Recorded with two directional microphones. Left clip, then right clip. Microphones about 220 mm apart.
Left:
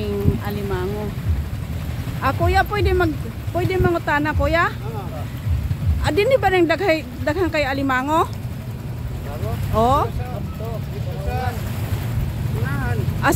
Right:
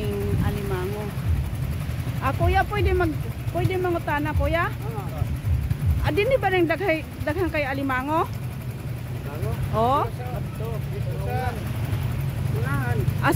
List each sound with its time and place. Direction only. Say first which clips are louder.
2.2 s speech: left 4 dB; 20° left (ahead or behind)
6.0 s speech: left 5 dB; 20° left (ahead or behind)
9.8 s speech: left 4 dB; 10° left (ahead or behind)